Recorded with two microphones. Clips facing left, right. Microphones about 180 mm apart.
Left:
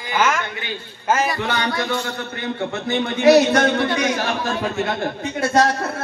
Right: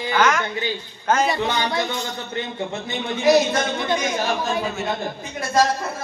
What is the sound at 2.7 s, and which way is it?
Speech, 65° left (ahead or behind).